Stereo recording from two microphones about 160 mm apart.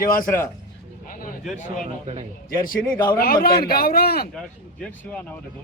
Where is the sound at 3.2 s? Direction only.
70° left (ahead or behind).